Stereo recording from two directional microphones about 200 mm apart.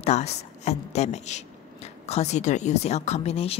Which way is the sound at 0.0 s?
35° left (ahead or behind).